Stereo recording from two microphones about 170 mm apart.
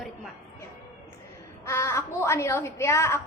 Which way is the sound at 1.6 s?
15° left (ahead or behind).